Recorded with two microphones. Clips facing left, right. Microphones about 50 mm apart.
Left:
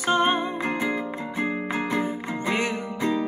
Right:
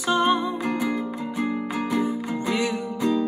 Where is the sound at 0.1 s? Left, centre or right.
Left.